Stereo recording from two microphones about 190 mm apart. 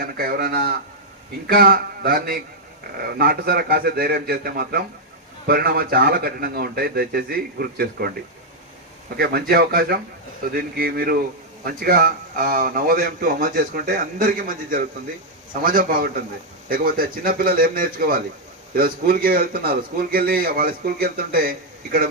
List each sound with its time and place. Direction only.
0.0 s a man's voice: 50° right (ahead or behind)
9.1 s a man's voice: 50° right (ahead or behind)